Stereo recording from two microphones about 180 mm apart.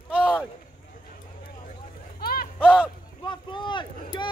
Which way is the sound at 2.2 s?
55° left (ahead or behind).